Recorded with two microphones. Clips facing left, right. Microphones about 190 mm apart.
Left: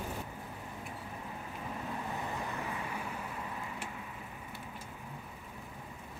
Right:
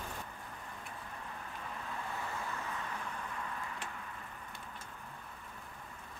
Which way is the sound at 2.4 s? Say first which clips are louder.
Left 3 dB; 15° left (ahead or behind).